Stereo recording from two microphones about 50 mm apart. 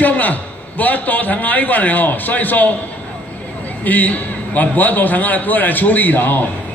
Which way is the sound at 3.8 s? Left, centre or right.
Left.